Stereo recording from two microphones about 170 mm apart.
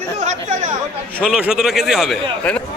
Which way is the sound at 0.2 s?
40° right (ahead or behind).